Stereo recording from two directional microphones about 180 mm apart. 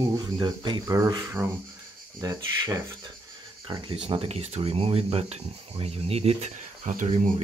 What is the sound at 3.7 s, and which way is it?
Speech, 30° right (ahead or behind).